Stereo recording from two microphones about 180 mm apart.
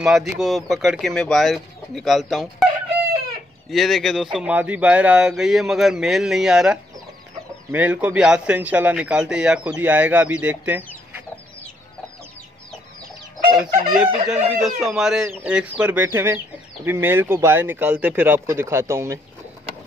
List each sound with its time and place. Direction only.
0.0 s a man's voice: centre (ahead or behind)
3.7 s a man's voice: centre (ahead or behind)
13.6 s a man's voice: 5° right (ahead or behind)